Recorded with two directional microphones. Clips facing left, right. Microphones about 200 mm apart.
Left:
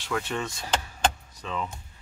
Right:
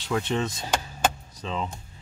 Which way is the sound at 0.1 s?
20° right (ahead or behind).